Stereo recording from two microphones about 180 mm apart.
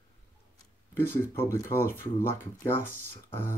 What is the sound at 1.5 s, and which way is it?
Speech, 15° left (ahead or behind).